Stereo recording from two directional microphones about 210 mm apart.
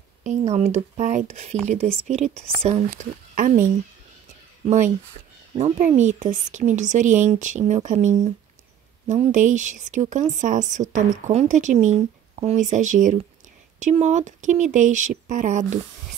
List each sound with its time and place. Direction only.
0.2 s speech: 35° right (ahead or behind)
2.9 s speech: 40° right (ahead or behind)
5.6 s speech: 35° right (ahead or behind)